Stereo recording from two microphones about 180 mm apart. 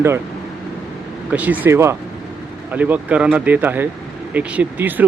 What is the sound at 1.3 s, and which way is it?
Speech, 10° right (ahead or behind).